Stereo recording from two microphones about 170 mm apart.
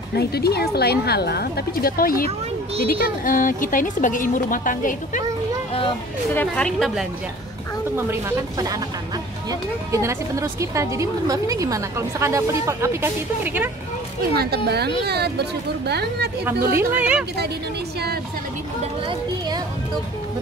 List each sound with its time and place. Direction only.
0.1 s a woman's voice: 70° left (ahead or behind); by 5.2 s 50° left (ahead or behind)
6.3 s a woman's voice: 5° left (ahead or behind)
7.9 s a woman's voice: 15° right (ahead or behind)
14.3 s speech: 65° right (ahead or behind)
16.9 s a woman's voice: 10° right (ahead or behind)